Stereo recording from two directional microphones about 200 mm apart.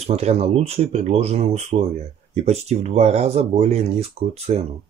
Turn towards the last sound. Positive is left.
turn(degrees=-30)  # may be behind; listen again after turning